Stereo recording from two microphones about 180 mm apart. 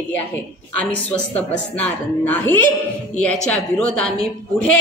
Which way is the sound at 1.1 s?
5° left (ahead or behind).